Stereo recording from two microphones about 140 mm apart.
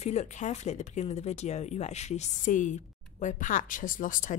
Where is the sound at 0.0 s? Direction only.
55° left (ahead or behind).